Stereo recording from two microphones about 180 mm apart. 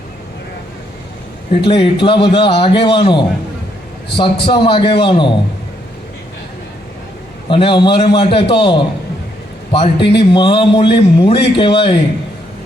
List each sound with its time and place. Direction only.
1.6 s a man's voice: 25° left (ahead or behind)
7.4 s a man's voice: 30° left (ahead or behind)